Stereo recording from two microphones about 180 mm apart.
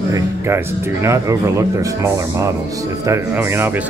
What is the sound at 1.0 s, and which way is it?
Speech, 15° right (ahead or behind).